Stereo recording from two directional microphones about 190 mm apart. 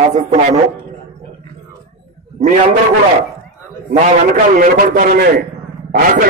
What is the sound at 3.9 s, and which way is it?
A man's voice, 45° right (ahead or behind).